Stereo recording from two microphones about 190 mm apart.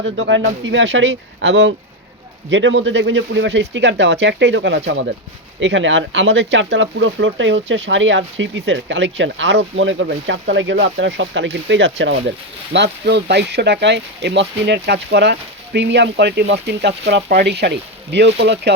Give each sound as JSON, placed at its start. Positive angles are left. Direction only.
{"t": 0.0, "sound": "speech", "side_deg": -80}